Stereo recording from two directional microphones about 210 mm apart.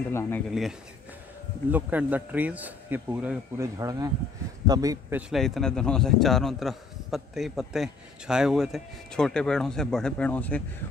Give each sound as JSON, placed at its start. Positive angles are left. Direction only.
{"t": 0.1, "sound": "speech", "side_deg": 10}
{"t": 0.5, "sound": "a man's voice", "side_deg": 0}
{"t": 5.3, "sound": "a man's voice", "side_deg": 0}